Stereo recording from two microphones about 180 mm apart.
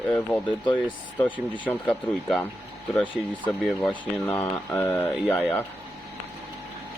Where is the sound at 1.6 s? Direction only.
10° left (ahead or behind).